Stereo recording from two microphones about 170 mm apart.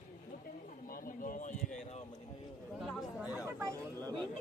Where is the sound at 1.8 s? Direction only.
40° left (ahead or behind).